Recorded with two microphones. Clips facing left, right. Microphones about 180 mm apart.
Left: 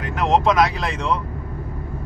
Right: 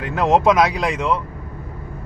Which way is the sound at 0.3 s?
20° right (ahead or behind).